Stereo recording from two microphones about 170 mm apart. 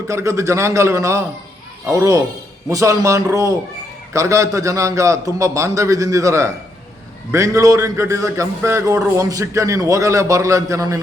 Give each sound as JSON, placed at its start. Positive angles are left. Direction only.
{"t": 0.1, "sound": "a man's voice", "side_deg": -15}